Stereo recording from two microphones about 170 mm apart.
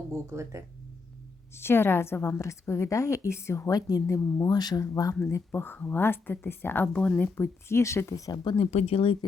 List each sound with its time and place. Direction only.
0.1 s speech: 15° right (ahead or behind)
1.5 s a woman's voice: 15° left (ahead or behind); by 9.1 s 35° left (ahead or behind)